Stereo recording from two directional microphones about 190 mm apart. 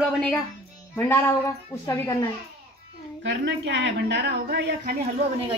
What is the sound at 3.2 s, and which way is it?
A woman's voice, 70° right (ahead or behind).